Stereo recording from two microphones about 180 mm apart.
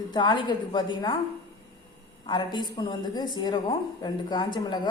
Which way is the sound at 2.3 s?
25° left (ahead or behind).